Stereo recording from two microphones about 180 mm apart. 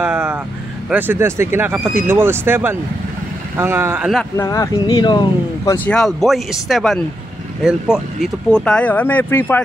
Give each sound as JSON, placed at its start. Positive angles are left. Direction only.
{"t": 0.0, "sound": "vehicle", "side_deg": -10}
{"t": 0.8, "sound": "speech", "side_deg": -10}
{"t": 4.4, "sound": "speech", "side_deg": 20}
{"t": 5.9, "sound": "speech", "side_deg": 5}